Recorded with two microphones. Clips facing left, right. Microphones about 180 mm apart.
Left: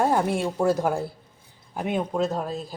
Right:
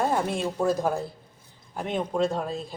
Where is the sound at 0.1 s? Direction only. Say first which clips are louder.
Left 3 dB; 10° left (ahead or behind).